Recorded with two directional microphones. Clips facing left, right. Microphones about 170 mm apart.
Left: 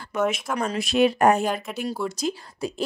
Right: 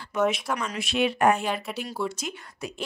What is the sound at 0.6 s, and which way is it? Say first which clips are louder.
Speech: left 6 dB; 35° left (ahead or behind).